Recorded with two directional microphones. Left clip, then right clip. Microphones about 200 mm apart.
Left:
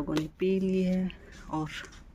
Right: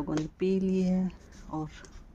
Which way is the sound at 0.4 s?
10° right (ahead or behind).